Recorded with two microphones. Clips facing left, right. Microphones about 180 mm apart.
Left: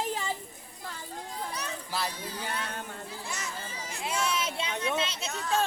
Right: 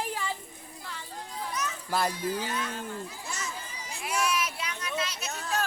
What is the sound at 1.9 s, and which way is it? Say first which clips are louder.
Speech: right 6 dB; 50° right (ahead or behind).